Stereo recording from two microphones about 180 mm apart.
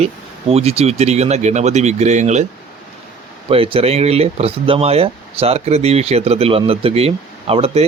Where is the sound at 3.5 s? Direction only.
30° right (ahead or behind).